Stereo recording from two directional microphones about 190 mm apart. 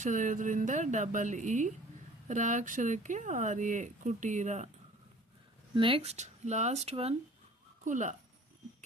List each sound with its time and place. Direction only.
0.0 s speech: 40° right (ahead or behind)
5.7 s speech: 25° right (ahead or behind)